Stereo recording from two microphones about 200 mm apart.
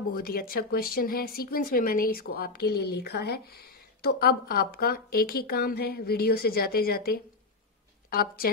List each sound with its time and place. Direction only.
0.1 s speech: 50° left (ahead or behind)